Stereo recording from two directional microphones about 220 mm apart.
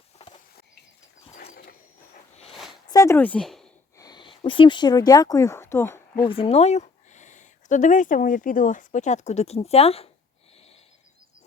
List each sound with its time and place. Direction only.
2.3 s a sound: 30° left (ahead or behind)
2.9 s speech: 15° left (ahead or behind)
3.9 s speech: 20° left (ahead or behind)
6.2 s speech: 25° left (ahead or behind)